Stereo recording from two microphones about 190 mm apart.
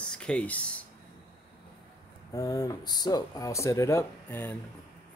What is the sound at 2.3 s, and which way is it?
Speech, 20° left (ahead or behind).